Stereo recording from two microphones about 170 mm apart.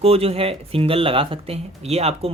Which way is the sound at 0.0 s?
35° right (ahead or behind).